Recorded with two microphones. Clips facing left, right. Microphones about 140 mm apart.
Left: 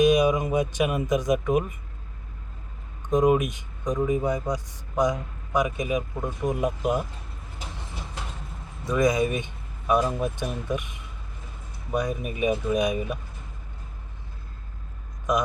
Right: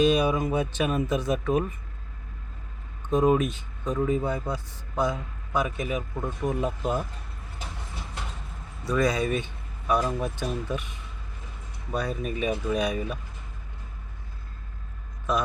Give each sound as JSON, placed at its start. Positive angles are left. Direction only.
{"t": 0.0, "sound": "speech", "side_deg": 15}
{"t": 3.1, "sound": "speech", "side_deg": 15}
{"t": 8.8, "sound": "speech", "side_deg": 20}